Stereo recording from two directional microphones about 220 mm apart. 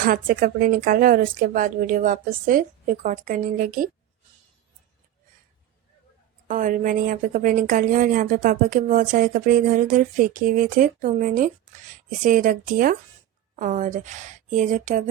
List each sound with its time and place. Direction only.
0.0 s a woman's voice: 40° right (ahead or behind)
6.5 s a woman's voice: 35° right (ahead or behind)